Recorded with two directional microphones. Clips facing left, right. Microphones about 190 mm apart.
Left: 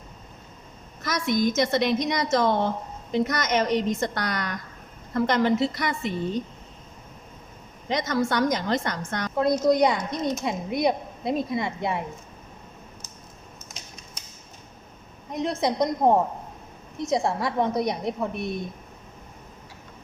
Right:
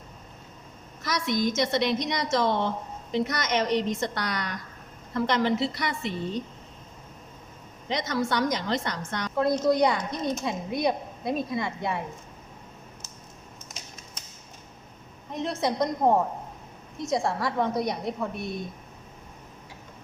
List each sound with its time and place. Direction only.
1.0 s a woman's voice: 50° left (ahead or behind)
7.9 s a woman's voice: 50° left (ahead or behind)
9.4 s a woman's voice: 20° left (ahead or behind)
15.3 s a woman's voice: 15° left (ahead or behind)